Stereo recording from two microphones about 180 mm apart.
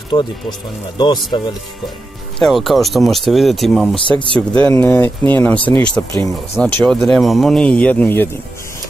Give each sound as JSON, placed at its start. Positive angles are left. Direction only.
{"t": 0.1, "sound": "speech", "side_deg": 25}
{"t": 2.3, "sound": "speech", "side_deg": 0}
{"t": 3.9, "sound": "speech", "side_deg": 30}
{"t": 4.4, "sound": "speech", "side_deg": 5}
{"t": 6.1, "sound": "speech", "side_deg": 20}
{"t": 6.6, "sound": "speech", "side_deg": 0}